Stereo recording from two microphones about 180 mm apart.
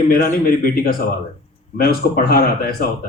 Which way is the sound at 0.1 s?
55° left (ahead or behind).